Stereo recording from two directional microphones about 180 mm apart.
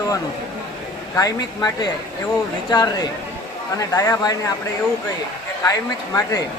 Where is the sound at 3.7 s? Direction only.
20° left (ahead or behind).